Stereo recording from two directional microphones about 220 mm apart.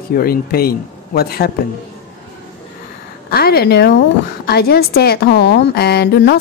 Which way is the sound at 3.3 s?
45° left (ahead or behind).